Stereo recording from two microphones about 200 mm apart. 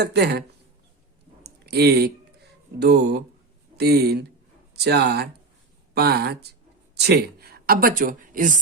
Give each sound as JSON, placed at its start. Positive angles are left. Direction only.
{"t": 0.0, "sound": "speech", "side_deg": -55}
{"t": 1.5, "sound": "a sound", "side_deg": -55}
{"t": 2.7, "sound": "a woman's voice", "side_deg": -55}